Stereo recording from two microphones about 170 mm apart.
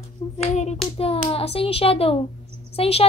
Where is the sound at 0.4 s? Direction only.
40° left (ahead or behind).